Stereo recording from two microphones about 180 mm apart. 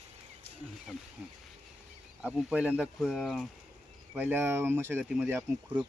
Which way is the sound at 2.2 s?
5° right (ahead or behind).